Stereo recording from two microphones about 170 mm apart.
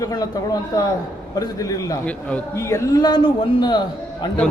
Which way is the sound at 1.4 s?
20° left (ahead or behind).